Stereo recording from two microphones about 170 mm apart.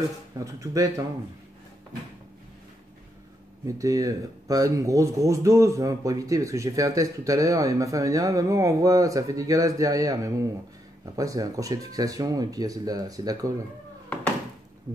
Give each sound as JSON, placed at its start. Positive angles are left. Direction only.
{"t": 0.4, "sound": "speech", "side_deg": -20}
{"t": 3.6, "sound": "speech", "side_deg": -20}